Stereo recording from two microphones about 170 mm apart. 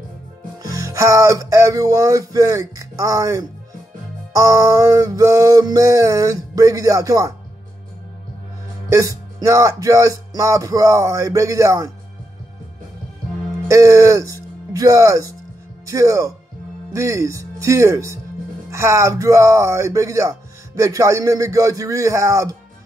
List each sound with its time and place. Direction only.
0.6 s speech: 20° right (ahead or behind)
8.9 s speech: 20° right (ahead or behind)
13.7 s speech: 20° right (ahead or behind)